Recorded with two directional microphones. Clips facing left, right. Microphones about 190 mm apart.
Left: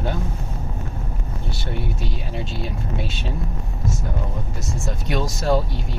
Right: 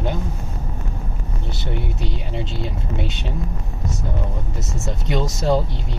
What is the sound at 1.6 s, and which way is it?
Speech, 20° right (ahead or behind).